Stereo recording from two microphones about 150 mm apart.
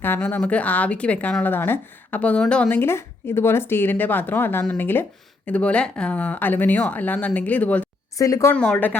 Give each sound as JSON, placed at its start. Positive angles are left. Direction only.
{"t": 0.0, "sound": "speech", "side_deg": 15}
{"t": 8.2, "sound": "speech", "side_deg": 20}
{"t": 8.5, "sound": "speech", "side_deg": 5}